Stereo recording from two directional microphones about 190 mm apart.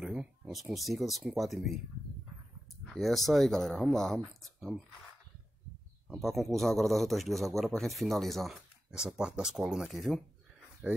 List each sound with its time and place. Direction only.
0.0 s speech: 5° right (ahead or behind)
2.9 s a man's voice: centre (ahead or behind)
6.0 s a man's voice: centre (ahead or behind)